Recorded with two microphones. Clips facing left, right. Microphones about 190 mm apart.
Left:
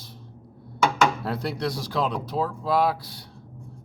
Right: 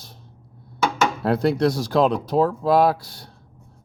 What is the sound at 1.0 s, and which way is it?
Speech, 50° right (ahead or behind).